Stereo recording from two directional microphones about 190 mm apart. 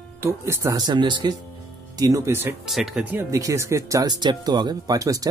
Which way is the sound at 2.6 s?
Centre (ahead or behind).